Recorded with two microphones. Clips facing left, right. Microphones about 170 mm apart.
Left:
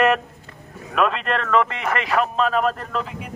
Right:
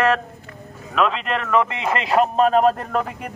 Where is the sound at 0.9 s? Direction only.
Centre (ahead or behind).